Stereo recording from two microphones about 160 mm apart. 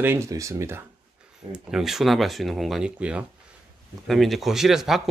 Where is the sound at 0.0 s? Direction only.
15° right (ahead or behind).